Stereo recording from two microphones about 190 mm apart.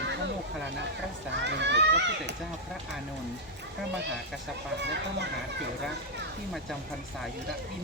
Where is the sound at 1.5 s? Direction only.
65° right (ahead or behind).